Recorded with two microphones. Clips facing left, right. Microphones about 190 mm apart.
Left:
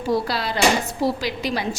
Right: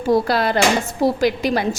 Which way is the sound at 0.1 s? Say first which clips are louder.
Right 6 dB; 50° right (ahead or behind).